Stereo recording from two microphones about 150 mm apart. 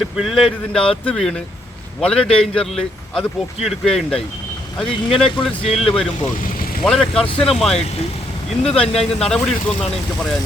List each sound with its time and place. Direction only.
0.0 s a man's voice: centre (ahead or behind)
7.3 s speech: 40° left (ahead or behind)
7.5 s a man's voice: centre (ahead or behind)
8.9 s speech: 40° left (ahead or behind)
9.3 s a man's voice: 5° left (ahead or behind)